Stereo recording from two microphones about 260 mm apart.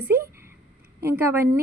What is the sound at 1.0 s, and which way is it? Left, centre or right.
Speech, centre.